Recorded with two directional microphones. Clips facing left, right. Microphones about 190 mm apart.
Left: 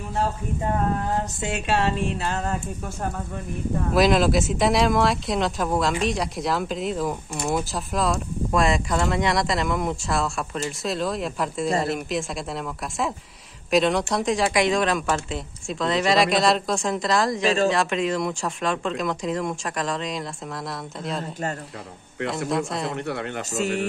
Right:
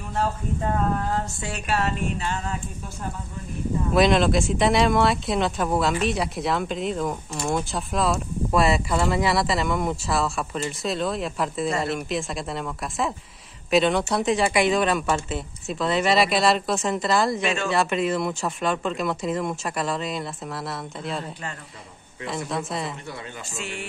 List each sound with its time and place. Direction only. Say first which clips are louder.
1.4 s speech: left 3 dB; 25° left (ahead or behind)
2.2 s speech: left 3 dB; 45° left (ahead or behind)
3.9 s speech: even; centre (ahead or behind)
17.4 s speech: left 5 dB; 35° left (ahead or behind)
17.7 s speech: even; centre (ahead or behind)
22.3 s speech: left 2 dB; centre (ahead or behind)
23.0 s speech: left 8 dB; 65° left (ahead or behind)
23.5 s speech: left 10 dB; 40° left (ahead or behind)